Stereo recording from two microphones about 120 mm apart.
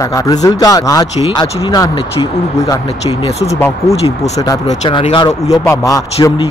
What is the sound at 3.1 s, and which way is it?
Speech, 55° left (ahead or behind).